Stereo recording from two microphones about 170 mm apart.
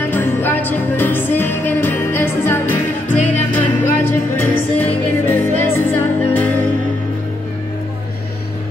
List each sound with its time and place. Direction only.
0.1 s music: 10° left (ahead or behind)
3.1 s music: 45° left (ahead or behind)
3.8 s music: 15° left (ahead or behind)